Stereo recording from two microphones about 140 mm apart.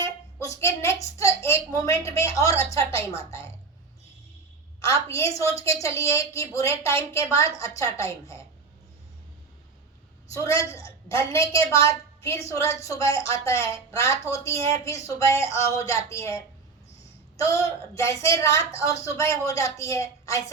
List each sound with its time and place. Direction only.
0.0 s a sound: 20° left (ahead or behind)
1.5 s a woman's voice: 20° left (ahead or behind)
4.8 s a woman's voice: 20° left (ahead or behind)
10.3 s a woman's voice: 20° left (ahead or behind)